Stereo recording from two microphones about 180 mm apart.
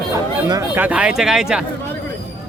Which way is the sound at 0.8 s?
5° right (ahead or behind).